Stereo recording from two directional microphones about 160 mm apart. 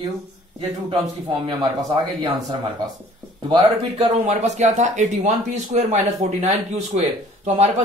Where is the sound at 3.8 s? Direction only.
45° right (ahead or behind).